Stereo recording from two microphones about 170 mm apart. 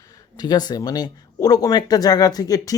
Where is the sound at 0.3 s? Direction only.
25° left (ahead or behind).